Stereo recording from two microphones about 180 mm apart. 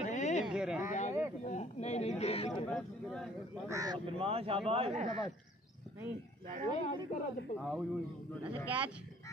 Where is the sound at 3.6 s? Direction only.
20° right (ahead or behind).